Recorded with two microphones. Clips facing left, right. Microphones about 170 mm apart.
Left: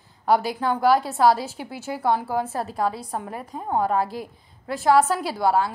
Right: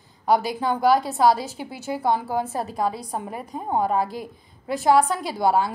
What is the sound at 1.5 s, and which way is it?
Speech, 5° left (ahead or behind).